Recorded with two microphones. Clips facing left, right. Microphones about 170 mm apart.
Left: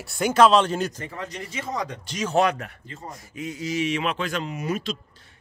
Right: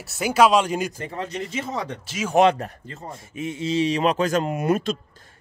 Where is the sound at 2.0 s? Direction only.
5° right (ahead or behind).